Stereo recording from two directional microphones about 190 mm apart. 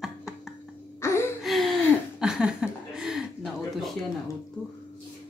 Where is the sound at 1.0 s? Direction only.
15° left (ahead or behind).